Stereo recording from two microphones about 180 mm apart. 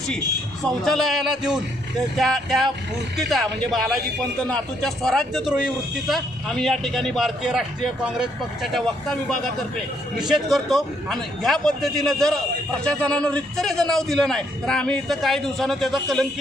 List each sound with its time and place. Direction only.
0.7 s a man's voice: centre (ahead or behind)
10.1 s a man's voice: centre (ahead or behind)